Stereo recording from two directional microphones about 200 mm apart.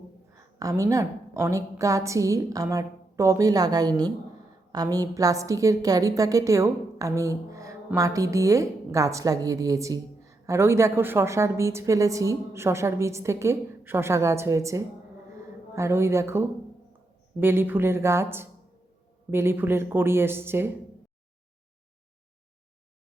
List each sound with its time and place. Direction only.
0.3 s a woman's voice: 15° right (ahead or behind)